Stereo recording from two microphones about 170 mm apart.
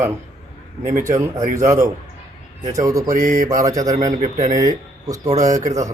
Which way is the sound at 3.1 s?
50° right (ahead or behind).